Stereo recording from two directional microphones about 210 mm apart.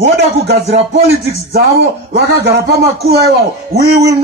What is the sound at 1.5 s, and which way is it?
A man's voice, 50° right (ahead or behind).